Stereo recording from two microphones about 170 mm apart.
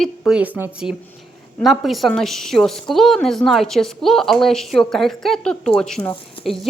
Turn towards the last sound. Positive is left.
turn(degrees=0)  # may be behind; listen again after turning